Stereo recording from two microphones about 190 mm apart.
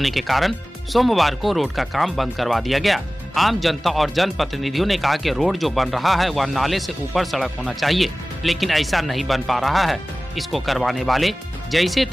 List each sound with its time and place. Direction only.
0.0 s speech: centre (ahead or behind)